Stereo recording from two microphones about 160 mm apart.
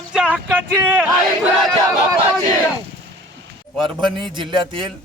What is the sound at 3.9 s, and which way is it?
Speech, 30° right (ahead or behind).